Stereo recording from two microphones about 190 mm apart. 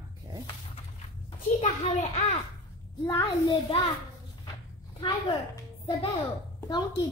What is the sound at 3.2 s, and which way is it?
Speech, 20° left (ahead or behind).